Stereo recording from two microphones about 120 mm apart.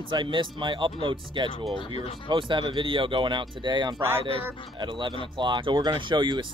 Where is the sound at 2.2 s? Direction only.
45° right (ahead or behind).